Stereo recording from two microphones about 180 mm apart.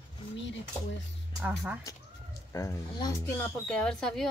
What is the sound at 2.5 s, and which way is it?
Speech, 15° left (ahead or behind).